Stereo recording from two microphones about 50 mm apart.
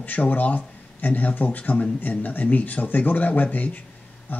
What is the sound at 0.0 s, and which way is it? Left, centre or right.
Speech, left.